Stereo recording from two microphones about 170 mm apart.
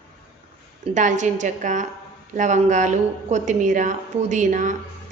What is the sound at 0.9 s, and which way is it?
A woman's voice, 45° right (ahead or behind).